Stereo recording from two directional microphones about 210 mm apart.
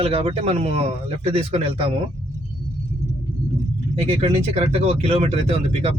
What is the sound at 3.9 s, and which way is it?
Speech, 30° right (ahead or behind).